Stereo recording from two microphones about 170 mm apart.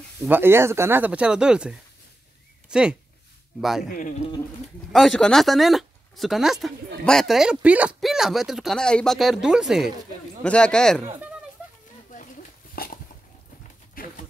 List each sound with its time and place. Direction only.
0.2 s speech: 10° right (ahead or behind)
4.9 s speech: centre (ahead or behind)
12.8 s a sound: 60° left (ahead or behind)
14.0 s dog: 60° left (ahead or behind)